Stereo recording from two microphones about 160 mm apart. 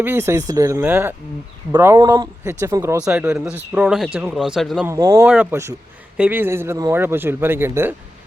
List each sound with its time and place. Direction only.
0.0 s a man's voice: 15° right (ahead or behind)
3.0 s speech: 5° right (ahead or behind)
4.9 s speech: 20° right (ahead or behind)
5.2 s a man's voice: 10° right (ahead or behind)